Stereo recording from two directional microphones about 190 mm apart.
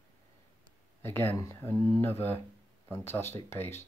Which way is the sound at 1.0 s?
10° left (ahead or behind).